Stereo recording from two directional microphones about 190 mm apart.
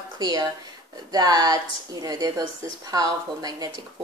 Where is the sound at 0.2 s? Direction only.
20° right (ahead or behind).